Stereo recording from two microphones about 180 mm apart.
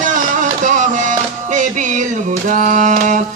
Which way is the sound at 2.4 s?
45° right (ahead or behind).